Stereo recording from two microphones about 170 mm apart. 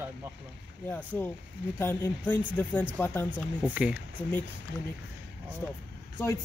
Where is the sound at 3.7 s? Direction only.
10° right (ahead or behind).